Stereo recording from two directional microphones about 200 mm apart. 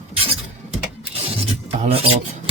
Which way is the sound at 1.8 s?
30° right (ahead or behind).